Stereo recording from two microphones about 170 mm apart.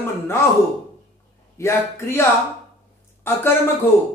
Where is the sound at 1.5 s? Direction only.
15° left (ahead or behind).